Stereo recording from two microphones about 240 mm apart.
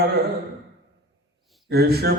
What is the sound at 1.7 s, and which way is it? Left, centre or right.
Mantra, right.